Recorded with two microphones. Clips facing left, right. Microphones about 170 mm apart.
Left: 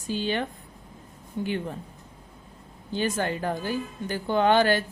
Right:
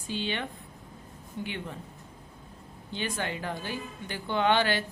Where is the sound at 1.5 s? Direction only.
40° left (ahead or behind).